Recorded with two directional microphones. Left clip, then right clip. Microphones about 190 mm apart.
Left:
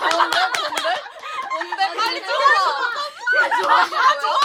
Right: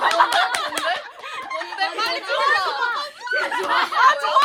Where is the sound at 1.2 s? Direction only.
45° left (ahead or behind).